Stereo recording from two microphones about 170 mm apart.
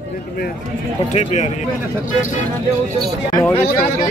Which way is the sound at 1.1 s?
40° left (ahead or behind).